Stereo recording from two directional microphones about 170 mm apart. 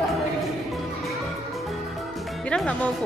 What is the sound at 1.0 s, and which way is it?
Music, centre (ahead or behind).